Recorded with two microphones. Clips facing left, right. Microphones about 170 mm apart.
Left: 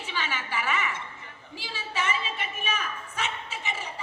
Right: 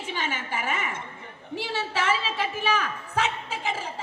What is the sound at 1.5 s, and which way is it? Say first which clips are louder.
A woman's voice: right 5 dB; 70° right (ahead or behind).